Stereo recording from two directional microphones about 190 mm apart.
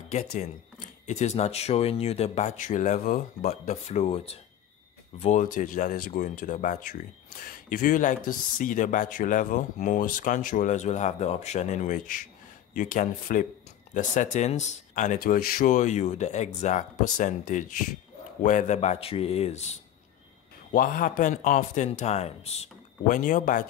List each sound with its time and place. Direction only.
0.4 s speech: 40° left (ahead or behind)